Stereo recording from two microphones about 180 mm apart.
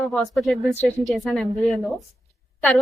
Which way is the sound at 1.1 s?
Centre (ahead or behind).